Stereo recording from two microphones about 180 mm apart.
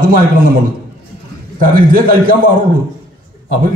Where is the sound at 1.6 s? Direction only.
50° right (ahead or behind).